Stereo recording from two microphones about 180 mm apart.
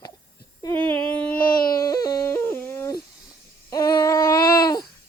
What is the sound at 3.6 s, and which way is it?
Babbling, 20° left (ahead or behind).